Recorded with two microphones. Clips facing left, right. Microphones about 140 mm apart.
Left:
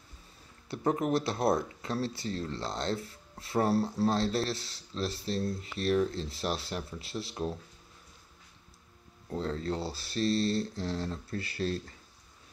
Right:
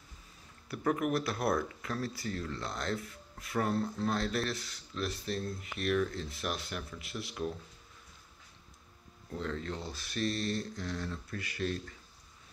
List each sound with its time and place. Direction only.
0.7 s speech: 30° left (ahead or behind)
9.3 s speech: 35° left (ahead or behind)